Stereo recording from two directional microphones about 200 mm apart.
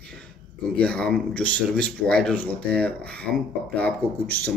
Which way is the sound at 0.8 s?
5° left (ahead or behind).